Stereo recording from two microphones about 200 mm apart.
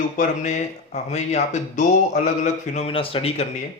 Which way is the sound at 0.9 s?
35° left (ahead or behind).